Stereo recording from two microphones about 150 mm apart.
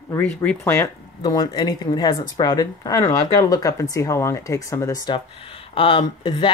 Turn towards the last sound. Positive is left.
turn(degrees=30)  # may be behind; listen again after turning